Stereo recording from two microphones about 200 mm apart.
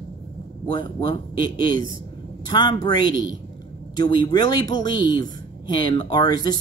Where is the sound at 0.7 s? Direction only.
25° left (ahead or behind).